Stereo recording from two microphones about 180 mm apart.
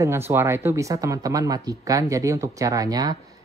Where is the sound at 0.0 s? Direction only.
15° right (ahead or behind).